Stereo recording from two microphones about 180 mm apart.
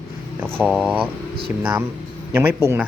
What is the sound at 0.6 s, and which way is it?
Speech, 5° right (ahead or behind).